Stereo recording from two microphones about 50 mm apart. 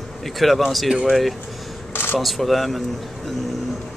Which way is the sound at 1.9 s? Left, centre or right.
Left.